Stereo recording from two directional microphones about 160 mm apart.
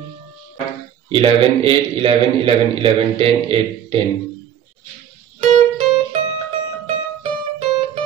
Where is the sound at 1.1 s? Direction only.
35° right (ahead or behind).